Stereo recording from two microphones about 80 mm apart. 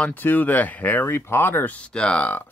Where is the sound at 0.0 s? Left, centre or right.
Left.